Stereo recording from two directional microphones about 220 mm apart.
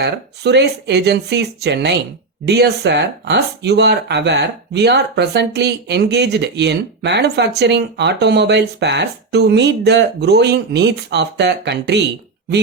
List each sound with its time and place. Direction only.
0.0 s speech: 50° right (ahead or behind)